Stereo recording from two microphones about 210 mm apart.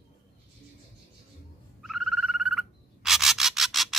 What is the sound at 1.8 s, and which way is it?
Frog, centre (ahead or behind).